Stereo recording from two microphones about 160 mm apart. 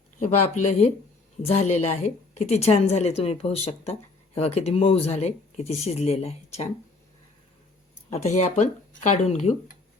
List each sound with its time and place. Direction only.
0.2 s a woman's voice: 45° left (ahead or behind)
8.1 s speech: 45° left (ahead or behind)